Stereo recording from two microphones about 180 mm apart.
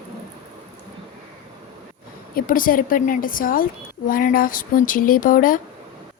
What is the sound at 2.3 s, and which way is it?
A woman's voice, 50° left (ahead or behind).